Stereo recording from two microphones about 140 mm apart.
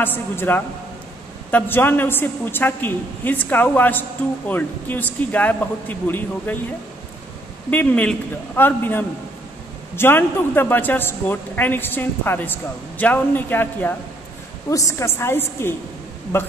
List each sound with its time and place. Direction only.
0.0 s speech: 15° left (ahead or behind)
7.7 s speech: 10° left (ahead or behind)